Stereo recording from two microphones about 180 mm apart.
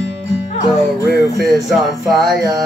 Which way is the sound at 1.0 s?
65° right (ahead or behind).